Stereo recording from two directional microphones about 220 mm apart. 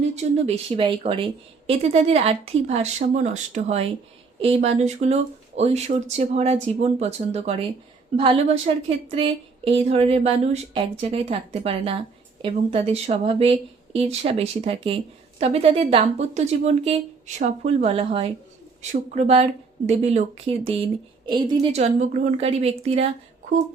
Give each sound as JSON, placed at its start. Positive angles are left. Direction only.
{"t": 0.2, "sound": "a woman's voice", "side_deg": -25}